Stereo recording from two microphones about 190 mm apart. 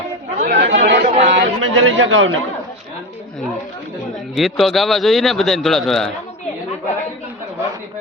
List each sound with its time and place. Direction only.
0.3 s chatter: 45° right (ahead or behind); by 0.9 s 60° right (ahead or behind)
1.0 s chatter: 35° right (ahead or behind)
1.3 s a man's voice: 75° right (ahead or behind)
4.4 s a man's voice: centre (ahead or behind)